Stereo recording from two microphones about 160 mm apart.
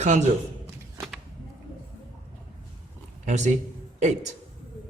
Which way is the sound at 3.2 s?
45° right (ahead or behind).